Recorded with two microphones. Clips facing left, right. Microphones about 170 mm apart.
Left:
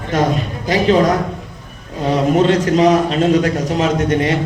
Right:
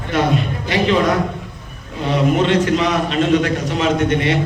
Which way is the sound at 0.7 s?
40° left (ahead or behind).